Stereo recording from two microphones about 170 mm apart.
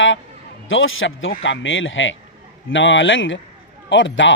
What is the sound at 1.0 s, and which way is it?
Speech, 90° left.